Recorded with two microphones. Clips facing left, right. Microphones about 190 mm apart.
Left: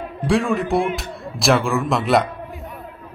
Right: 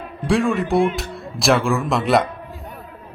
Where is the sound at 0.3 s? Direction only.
Centre (ahead or behind).